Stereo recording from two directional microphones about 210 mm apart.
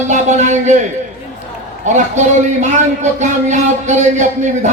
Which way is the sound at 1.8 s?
35° right (ahead or behind).